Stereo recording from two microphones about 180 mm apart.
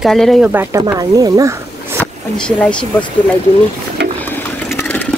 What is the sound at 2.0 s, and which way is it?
Speech, 5° left (ahead or behind).